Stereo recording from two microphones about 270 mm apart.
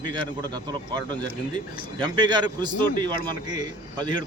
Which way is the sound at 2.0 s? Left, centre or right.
Centre.